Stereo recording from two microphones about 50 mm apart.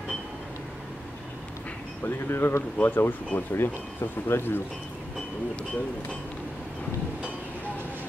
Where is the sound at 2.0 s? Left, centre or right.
Left.